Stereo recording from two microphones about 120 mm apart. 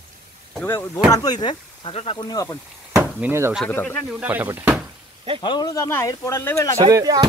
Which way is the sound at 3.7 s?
15° left (ahead or behind).